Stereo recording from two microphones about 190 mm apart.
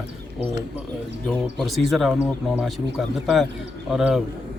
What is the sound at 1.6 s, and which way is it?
Speech, centre (ahead or behind).